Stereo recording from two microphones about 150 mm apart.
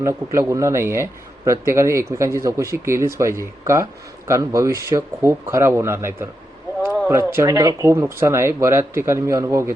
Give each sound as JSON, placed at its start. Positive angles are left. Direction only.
{"t": 0.0, "sound": "speech", "side_deg": -20}